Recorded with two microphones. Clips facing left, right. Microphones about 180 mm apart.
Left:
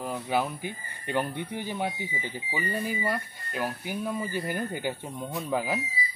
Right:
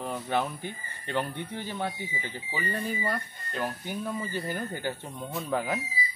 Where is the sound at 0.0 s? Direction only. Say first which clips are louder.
Left 1 dB; 10° left (ahead or behind).